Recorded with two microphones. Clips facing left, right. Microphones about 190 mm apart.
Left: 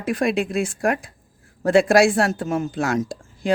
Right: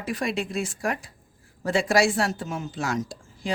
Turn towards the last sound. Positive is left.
turn(degrees=55)  # may be behind; listen again after turning